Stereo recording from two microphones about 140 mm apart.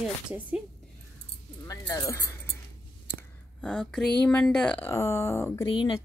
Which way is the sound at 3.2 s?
5° left (ahead or behind).